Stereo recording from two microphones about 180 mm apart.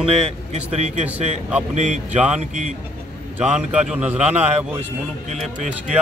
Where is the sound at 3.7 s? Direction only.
5° right (ahead or behind).